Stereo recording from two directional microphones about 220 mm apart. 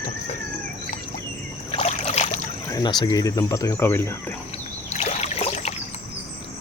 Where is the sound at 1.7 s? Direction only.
25° left (ahead or behind).